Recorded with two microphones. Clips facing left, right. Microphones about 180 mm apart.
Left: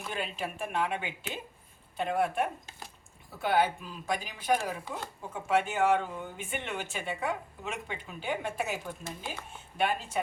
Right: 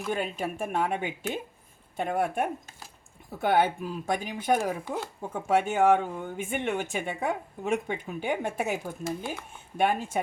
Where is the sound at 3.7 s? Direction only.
55° right (ahead or behind).